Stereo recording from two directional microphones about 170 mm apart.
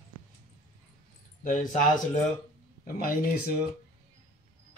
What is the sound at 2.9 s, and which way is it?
Speech, 60° left (ahead or behind).